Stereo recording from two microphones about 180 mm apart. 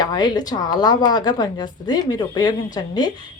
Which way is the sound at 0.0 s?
25° left (ahead or behind).